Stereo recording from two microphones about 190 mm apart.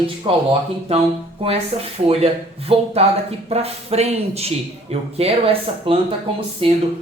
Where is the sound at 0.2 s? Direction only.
25° right (ahead or behind).